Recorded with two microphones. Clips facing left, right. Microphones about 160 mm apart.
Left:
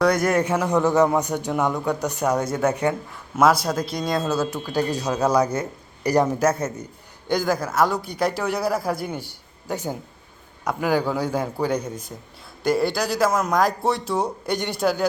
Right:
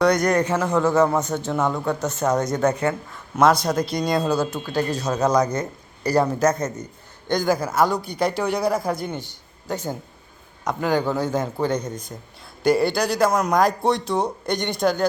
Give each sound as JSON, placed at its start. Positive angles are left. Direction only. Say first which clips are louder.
{"t": 0.0, "sound": "a man's voice", "louder": "right 1 dB", "side_deg": 5}